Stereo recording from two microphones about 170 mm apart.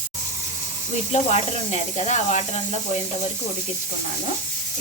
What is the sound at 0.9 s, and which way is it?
Snake, 40° left (ahead or behind).